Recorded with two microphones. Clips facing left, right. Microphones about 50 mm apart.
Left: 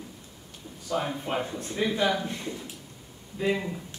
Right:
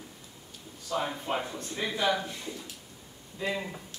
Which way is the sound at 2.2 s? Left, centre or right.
Left.